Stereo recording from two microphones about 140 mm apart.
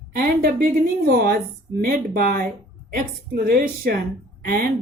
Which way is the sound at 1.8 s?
90° right.